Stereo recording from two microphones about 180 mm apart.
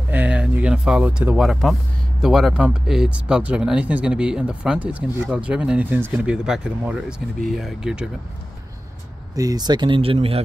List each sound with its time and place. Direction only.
0.1 s speech: 10° right (ahead or behind)
9.3 s speech: 20° right (ahead or behind)